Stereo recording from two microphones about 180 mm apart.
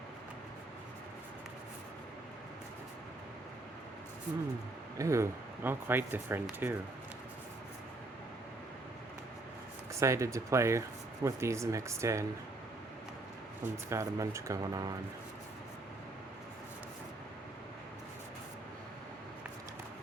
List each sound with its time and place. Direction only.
4.9 s speech: 15° right (ahead or behind)
9.9 s speech: 15° right (ahead or behind)
13.9 s speech: 15° right (ahead or behind)